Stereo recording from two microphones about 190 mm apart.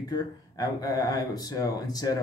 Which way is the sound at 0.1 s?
20° left (ahead or behind).